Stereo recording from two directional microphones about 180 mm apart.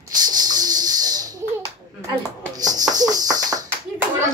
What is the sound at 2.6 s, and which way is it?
Speech, 20° right (ahead or behind).